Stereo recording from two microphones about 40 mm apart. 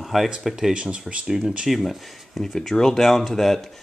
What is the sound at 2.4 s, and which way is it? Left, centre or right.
Speech, centre.